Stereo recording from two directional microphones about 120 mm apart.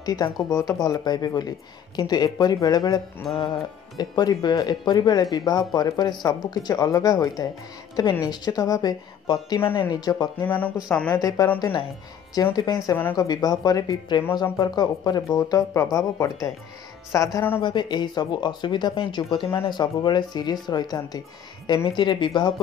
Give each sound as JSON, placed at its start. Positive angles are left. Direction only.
{"t": 0.0, "sound": "speech", "side_deg": 35}
{"t": 0.5, "sound": "speech", "side_deg": 25}
{"t": 0.8, "sound": "speech", "side_deg": 35}
{"t": 3.3, "sound": "music", "side_deg": 0}
{"t": 3.9, "sound": "a woman's voice", "side_deg": 35}
{"t": 10.4, "sound": "speech", "side_deg": 15}
{"t": 11.1, "sound": "speech", "side_deg": 30}
{"t": 12.5, "sound": "speech", "side_deg": 30}
{"t": 17.6, "sound": "speech", "side_deg": 40}